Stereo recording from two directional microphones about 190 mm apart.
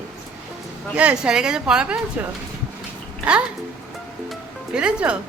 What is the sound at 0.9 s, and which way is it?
Speech, 5° right (ahead or behind).